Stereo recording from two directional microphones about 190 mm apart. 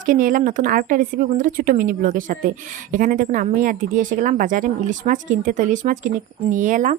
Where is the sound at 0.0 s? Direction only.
45° right (ahead or behind).